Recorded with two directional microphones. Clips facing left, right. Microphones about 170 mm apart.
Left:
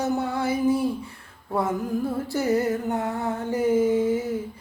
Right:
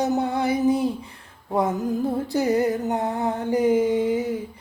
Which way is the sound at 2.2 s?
15° right (ahead or behind).